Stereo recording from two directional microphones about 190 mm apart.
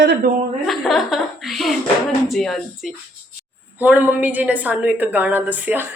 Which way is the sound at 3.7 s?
10° right (ahead or behind).